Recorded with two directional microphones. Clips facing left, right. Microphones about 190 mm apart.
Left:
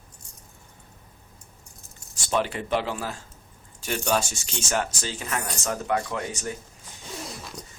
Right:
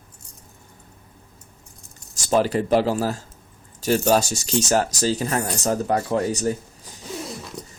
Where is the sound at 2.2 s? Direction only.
40° right (ahead or behind).